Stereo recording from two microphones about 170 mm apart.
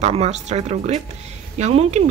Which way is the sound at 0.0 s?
40° right (ahead or behind).